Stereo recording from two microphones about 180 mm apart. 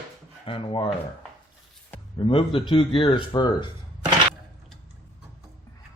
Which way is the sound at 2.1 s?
30° left (ahead or behind).